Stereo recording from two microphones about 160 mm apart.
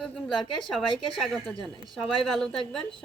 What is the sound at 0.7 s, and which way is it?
Speech, centre (ahead or behind).